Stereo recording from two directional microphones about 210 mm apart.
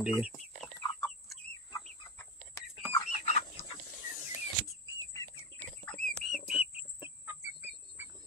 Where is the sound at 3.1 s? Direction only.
30° left (ahead or behind).